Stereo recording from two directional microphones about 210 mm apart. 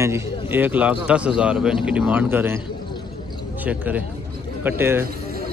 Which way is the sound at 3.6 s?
5° right (ahead or behind).